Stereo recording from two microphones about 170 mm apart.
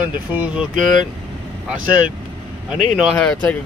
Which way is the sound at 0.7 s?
50° right (ahead or behind).